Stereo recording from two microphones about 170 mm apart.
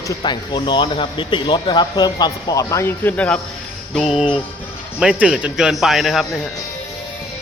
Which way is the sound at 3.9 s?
5° right (ahead or behind).